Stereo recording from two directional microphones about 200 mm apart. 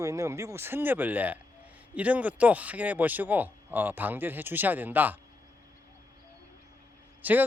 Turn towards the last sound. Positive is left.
turn(degrees=-10)  # may be behind; listen again after turning